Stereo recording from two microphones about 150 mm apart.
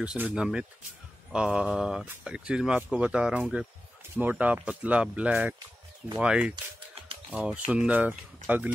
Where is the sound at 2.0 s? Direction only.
5° right (ahead or behind).